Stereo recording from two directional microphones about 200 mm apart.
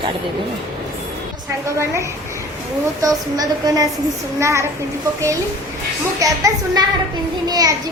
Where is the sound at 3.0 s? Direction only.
20° right (ahead or behind).